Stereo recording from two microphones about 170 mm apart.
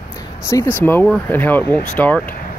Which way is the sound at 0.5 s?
20° left (ahead or behind).